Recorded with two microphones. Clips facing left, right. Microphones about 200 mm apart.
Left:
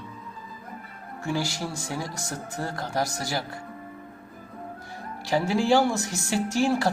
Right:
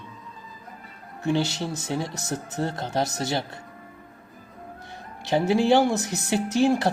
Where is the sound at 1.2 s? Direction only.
20° right (ahead or behind).